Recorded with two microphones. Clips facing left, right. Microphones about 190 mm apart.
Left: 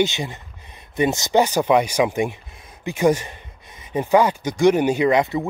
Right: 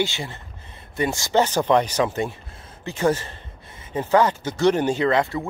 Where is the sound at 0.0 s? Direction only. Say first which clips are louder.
Left 4 dB; 20° left (ahead or behind).